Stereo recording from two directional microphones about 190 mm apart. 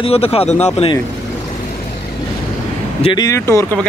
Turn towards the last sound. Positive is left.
turn(degrees=10)  # may be behind; listen again after turning